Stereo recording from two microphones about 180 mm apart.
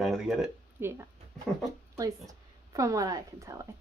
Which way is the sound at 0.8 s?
15° right (ahead or behind).